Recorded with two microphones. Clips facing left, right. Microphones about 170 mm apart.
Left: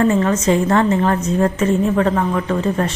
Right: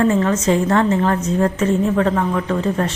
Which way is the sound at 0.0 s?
10° left (ahead or behind).